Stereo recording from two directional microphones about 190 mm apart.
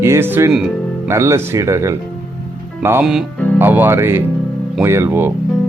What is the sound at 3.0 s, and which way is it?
Speech, centre (ahead or behind).